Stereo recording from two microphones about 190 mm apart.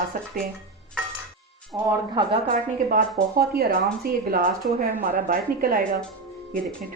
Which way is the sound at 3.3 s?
55° right (ahead or behind).